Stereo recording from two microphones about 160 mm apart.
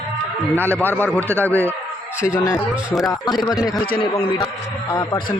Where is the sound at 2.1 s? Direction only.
5° right (ahead or behind).